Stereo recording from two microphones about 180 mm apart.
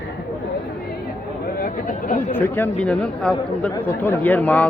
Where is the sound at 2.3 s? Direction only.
10° left (ahead or behind).